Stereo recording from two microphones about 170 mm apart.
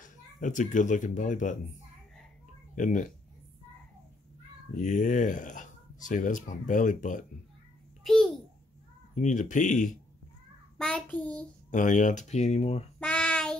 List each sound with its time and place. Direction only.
0.0 s a child's voice: 50° left (ahead or behind)
2.7 s speech: 50° left (ahead or behind)
4.7 s speech: 50° left (ahead or behind)
8.0 s babbling: centre (ahead or behind)
9.1 s speech: 45° left (ahead or behind)
10.8 s child singing: 5° left (ahead or behind)
11.7 s speech: 50° left (ahead or behind)
13.0 s child singing: 5° left (ahead or behind)